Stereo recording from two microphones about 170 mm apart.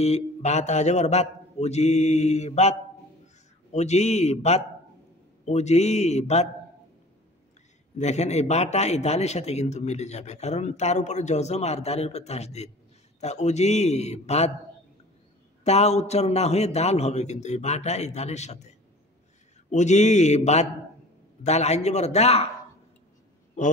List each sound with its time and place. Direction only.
0.0 s a man's voice: 40° left (ahead or behind)
3.7 s a man's voice: 40° left (ahead or behind)
8.0 s a man's voice: 40° left (ahead or behind)
15.6 s a man's voice: 40° left (ahead or behind)